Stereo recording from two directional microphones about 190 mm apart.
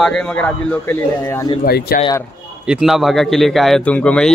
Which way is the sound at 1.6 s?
55° left (ahead or behind).